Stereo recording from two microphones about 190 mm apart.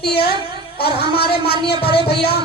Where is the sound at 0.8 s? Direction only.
55° left (ahead or behind).